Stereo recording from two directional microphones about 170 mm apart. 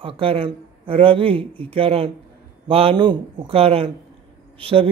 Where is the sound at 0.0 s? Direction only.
30° right (ahead or behind).